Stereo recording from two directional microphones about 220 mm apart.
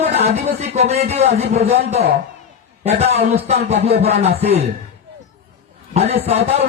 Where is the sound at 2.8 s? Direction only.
30° right (ahead or behind).